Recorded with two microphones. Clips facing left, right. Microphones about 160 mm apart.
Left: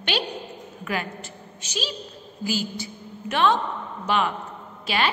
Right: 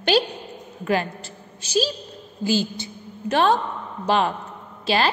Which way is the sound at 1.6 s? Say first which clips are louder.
Right 9 dB; 35° right (ahead or behind).